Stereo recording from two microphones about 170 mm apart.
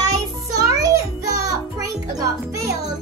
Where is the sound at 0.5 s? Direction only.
20° right (ahead or behind).